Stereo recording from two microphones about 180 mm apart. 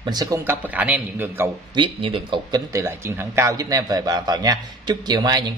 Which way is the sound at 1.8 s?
30° right (ahead or behind).